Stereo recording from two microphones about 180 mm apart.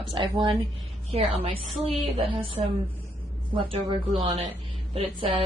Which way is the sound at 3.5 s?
35° right (ahead or behind).